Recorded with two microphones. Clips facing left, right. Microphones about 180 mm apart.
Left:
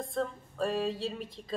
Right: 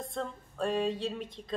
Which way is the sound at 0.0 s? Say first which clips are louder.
Left 3 dB; 5° left (ahead or behind).